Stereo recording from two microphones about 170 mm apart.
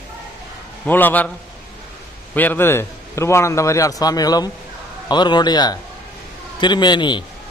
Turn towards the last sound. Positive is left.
turn(degrees=25)  # may be behind; listen again after turning